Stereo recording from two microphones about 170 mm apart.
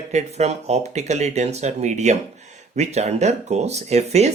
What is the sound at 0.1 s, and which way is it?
Speech, 40° right (ahead or behind).